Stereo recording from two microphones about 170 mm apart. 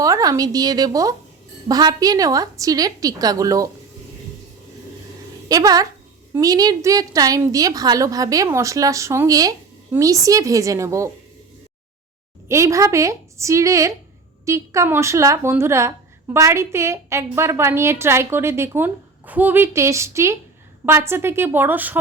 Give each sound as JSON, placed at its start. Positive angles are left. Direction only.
{"t": 0.0, "sound": "a woman's voice", "side_deg": -20}
{"t": 5.5, "sound": "a woman's voice", "side_deg": -20}
{"t": 12.5, "sound": "a woman's voice", "side_deg": -15}